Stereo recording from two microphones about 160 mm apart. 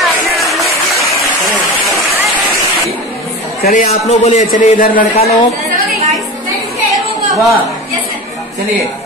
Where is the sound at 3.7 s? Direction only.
45° left (ahead or behind).